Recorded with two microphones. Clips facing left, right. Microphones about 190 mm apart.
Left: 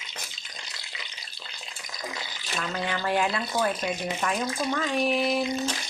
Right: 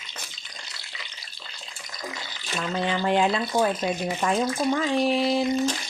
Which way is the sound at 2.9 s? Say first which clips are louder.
Right 4 dB; 25° right (ahead or behind).